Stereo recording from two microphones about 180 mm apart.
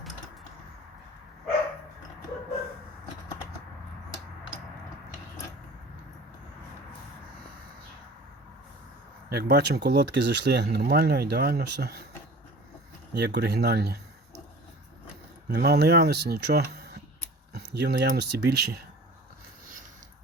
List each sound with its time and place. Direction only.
9.3 s speech: 65° right (ahead or behind)
13.1 s speech: 70° right (ahead or behind)
15.4 s speech: 65° right (ahead or behind)
17.5 s speech: 75° right (ahead or behind)